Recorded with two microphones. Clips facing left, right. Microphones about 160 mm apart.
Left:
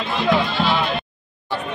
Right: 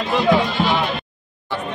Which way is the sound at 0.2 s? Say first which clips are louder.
Right 1 dB; 20° right (ahead or behind).